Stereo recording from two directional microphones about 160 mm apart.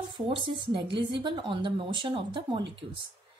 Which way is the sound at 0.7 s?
30° right (ahead or behind).